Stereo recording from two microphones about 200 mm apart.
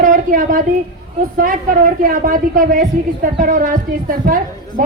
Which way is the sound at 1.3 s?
45° right (ahead or behind).